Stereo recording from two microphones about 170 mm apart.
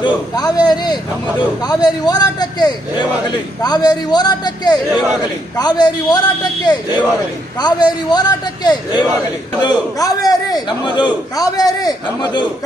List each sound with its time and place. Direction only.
0.0 s a man's voice: 25° left (ahead or behind)